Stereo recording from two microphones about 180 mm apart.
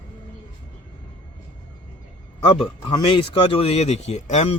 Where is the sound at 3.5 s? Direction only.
35° left (ahead or behind).